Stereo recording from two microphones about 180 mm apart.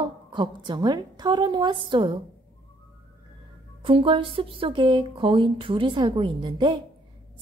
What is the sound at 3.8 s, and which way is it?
Speech, 30° right (ahead or behind).